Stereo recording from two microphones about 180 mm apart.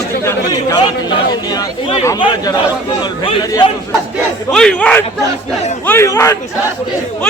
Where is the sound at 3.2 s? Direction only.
30° left (ahead or behind).